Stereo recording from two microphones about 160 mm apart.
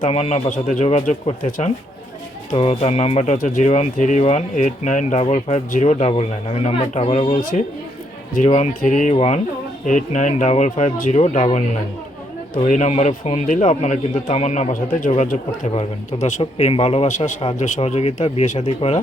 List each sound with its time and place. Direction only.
0.0 s speech: 45° left (ahead or behind)
1.5 s speech: 60° left (ahead or behind)
2.5 s speech: 40° left (ahead or behind)
3.3 s speech: 55° left (ahead or behind); by 7.3 s 40° left (ahead or behind)
8.4 s speech: 45° left (ahead or behind)